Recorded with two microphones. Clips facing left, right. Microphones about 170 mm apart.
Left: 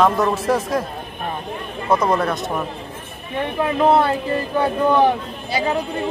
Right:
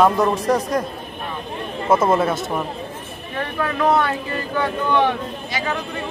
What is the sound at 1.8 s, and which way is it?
Speech, 5° right (ahead or behind).